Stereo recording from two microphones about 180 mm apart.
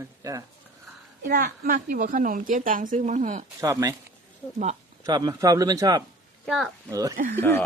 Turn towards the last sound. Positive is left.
turn(degrees=15)  # may be behind; listen again after turning